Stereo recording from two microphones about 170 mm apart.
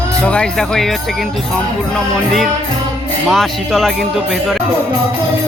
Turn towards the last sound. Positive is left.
turn(degrees=0)  # may be behind; listen again after turning